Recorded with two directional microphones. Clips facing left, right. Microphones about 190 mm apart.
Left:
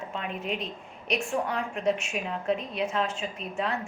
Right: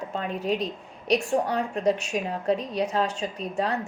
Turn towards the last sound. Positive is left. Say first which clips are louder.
# right 4 dB
turn(degrees=-35)  # may be behind; listen again after turning